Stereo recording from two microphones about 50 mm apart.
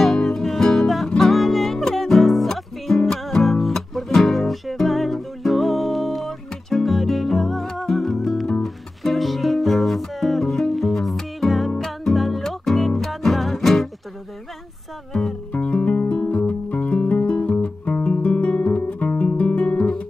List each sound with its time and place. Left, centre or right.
0.0 s music: centre
15.5 s guitar: left